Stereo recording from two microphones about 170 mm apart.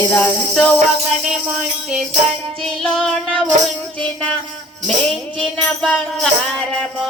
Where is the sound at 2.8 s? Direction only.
5° left (ahead or behind).